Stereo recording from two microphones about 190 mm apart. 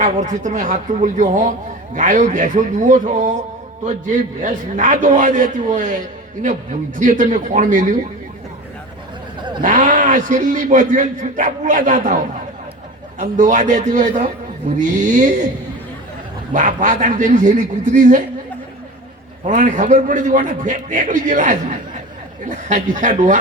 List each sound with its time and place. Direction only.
0.0 s a man's voice: 40° right (ahead or behind)
7.0 s a man's voice: 40° right (ahead or behind)
9.6 s a man's voice: 40° right (ahead or behind)
16.5 s a man's voice: 40° right (ahead or behind)
19.5 s a man's voice: 40° right (ahead or behind)